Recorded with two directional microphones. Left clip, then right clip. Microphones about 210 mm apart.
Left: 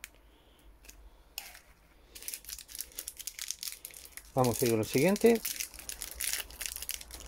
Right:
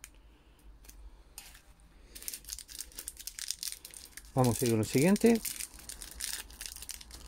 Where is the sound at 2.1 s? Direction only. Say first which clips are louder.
Even; 15° right (ahead or behind).